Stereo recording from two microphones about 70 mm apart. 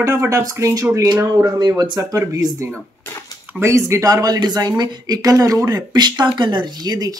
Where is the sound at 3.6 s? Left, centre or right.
Right.